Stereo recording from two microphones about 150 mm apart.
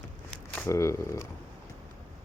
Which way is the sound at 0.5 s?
15° left (ahead or behind).